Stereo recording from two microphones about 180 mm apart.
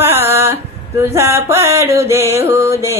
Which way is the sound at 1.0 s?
15° right (ahead or behind).